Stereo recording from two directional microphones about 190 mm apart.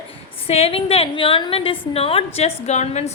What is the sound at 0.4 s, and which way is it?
A woman's voice, 30° left (ahead or behind).